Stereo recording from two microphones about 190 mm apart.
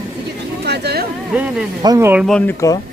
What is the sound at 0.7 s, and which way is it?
Speech, 60° right (ahead or behind).